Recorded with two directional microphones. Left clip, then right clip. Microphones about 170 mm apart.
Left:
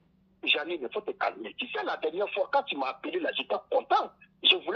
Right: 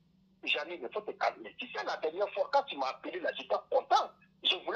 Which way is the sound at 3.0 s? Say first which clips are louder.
Left 5 dB; 35° left (ahead or behind).